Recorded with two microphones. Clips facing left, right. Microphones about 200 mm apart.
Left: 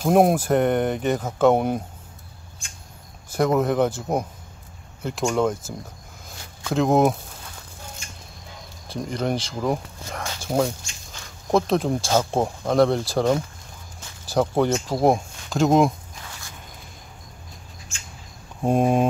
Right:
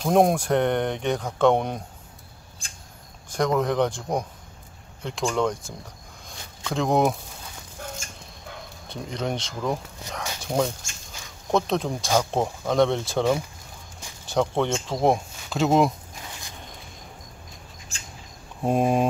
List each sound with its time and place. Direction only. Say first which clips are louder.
0.0 s speech: left 2 dB; 5° left (ahead or behind)
3.3 s speech: left 3 dB; 5° left (ahead or behind)
6.2 s a sound: left 3 dB; 5° left (ahead or behind)
8.8 s speech: left 4 dB; centre (ahead or behind)
17.9 s mouse: right 1 dB; 35° right (ahead or behind)
18.6 s speech: left 2 dB; centre (ahead or behind)